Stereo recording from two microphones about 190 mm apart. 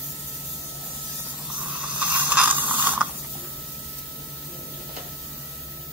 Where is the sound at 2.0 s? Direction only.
5° right (ahead or behind).